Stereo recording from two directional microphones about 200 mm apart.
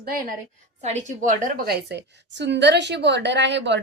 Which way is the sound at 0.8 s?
35° right (ahead or behind).